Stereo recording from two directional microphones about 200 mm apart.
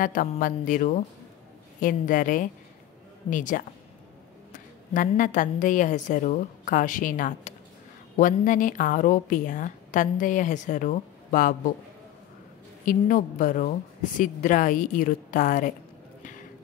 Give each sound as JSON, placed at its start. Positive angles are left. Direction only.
{"t": 0.0, "sound": "a woman's voice", "side_deg": 40}
{"t": 12.8, "sound": "speech", "side_deg": 40}